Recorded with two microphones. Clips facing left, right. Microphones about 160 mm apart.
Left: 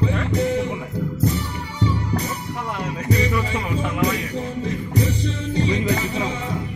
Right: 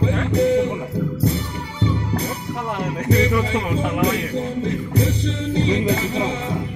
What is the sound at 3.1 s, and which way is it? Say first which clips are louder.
Music: right 3 dB; 65° right (ahead or behind).